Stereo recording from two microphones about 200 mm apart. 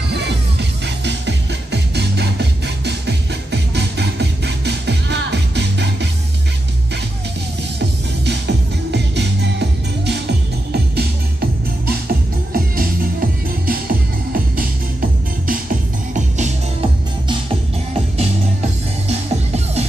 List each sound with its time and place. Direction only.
0.1 s music: 60° right (ahead or behind)
8.3 s music: 60° right (ahead or behind); by 16.5 s 35° right (ahead or behind)
19.0 s music: 30° right (ahead or behind)